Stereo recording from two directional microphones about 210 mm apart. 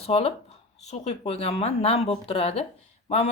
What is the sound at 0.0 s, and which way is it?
Speech, 30° left (ahead or behind).